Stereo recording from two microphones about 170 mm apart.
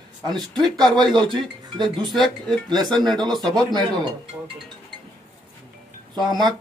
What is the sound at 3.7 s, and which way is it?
Speech, 25° right (ahead or behind).